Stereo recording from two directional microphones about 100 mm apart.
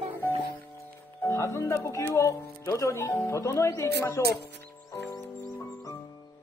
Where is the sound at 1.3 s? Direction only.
25° left (ahead or behind).